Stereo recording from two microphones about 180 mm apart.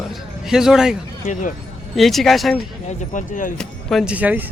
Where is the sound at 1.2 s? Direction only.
45° left (ahead or behind).